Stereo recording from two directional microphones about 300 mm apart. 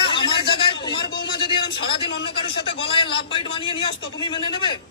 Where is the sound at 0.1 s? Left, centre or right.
Centre.